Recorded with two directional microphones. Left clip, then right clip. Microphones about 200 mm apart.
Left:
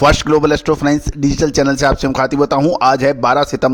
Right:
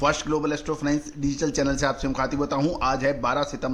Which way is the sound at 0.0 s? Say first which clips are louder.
Left 12 dB; 45° left (ahead or behind).